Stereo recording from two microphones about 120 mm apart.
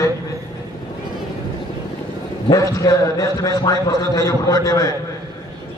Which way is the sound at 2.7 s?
30° left (ahead or behind).